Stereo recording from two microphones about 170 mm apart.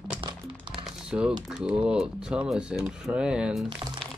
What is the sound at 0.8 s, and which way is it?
Crumpling, 5° right (ahead or behind).